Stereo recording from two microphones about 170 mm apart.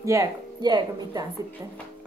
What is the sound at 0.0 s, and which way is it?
Speech, 20° right (ahead or behind).